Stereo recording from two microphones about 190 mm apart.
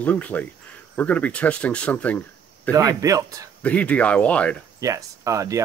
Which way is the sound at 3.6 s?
5° left (ahead or behind).